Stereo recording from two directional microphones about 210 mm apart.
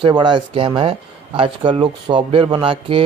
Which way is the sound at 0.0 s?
20° right (ahead or behind).